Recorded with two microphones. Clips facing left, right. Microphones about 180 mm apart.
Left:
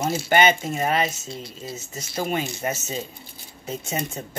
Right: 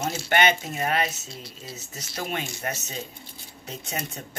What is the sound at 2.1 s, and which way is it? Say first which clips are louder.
Speech: left 5 dB; 5° left (ahead or behind).